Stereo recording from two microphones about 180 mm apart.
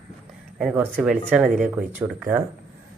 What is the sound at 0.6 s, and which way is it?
Speech, 5° right (ahead or behind).